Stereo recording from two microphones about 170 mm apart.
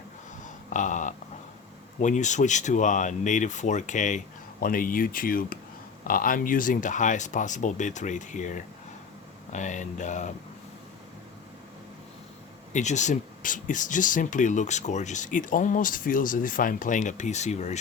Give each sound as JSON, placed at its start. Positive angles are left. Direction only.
{"t": 0.7, "sound": "speech", "side_deg": 50}
{"t": 12.7, "sound": "speech", "side_deg": 45}